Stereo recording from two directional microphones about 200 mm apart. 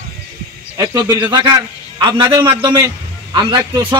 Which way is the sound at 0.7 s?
20° right (ahead or behind).